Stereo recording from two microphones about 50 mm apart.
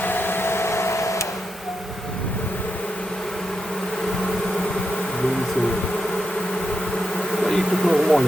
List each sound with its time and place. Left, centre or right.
0.0 s printer: left
7.3 s bee: centre